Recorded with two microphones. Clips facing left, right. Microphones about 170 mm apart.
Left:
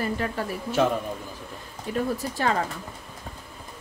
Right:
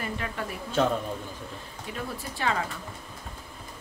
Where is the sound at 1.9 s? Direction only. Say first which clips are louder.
Left 9 dB; 45° left (ahead or behind).